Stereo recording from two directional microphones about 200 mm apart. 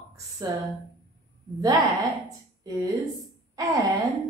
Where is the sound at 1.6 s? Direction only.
20° right (ahead or behind).